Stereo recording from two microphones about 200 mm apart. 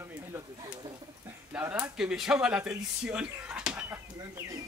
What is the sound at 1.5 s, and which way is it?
Speech, 10° right (ahead or behind).